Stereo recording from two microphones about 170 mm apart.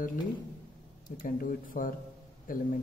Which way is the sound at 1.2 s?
55° left (ahead or behind).